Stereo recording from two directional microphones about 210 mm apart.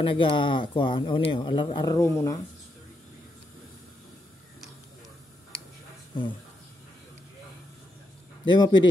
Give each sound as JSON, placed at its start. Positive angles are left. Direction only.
{"t": 0.0, "sound": "speech", "side_deg": 25}
{"t": 6.1, "sound": "speech", "side_deg": 20}
{"t": 8.5, "sound": "speech", "side_deg": 20}